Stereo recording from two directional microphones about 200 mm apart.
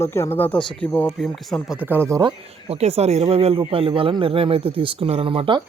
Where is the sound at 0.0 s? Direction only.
10° left (ahead or behind); by 2.3 s 15° right (ahead or behind).